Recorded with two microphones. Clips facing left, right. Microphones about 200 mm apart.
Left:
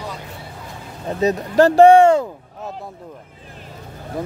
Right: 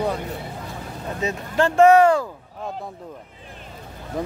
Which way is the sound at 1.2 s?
40° left (ahead or behind).